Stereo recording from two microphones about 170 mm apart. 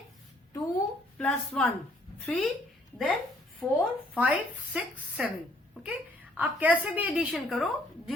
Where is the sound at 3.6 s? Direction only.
5° left (ahead or behind).